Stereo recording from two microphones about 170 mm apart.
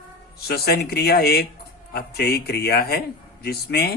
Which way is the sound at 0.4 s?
70° left (ahead or behind).